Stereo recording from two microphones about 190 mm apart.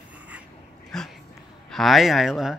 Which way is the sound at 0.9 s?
Centre (ahead or behind).